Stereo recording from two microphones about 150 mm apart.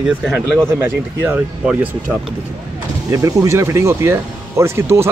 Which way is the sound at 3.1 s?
20° right (ahead or behind).